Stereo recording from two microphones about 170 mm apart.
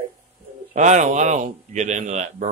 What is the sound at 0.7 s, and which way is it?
Speech, 45° right (ahead or behind).